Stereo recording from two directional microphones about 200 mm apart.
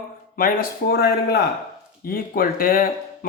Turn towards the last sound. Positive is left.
turn(degrees=45)  # may be behind; listen again after turning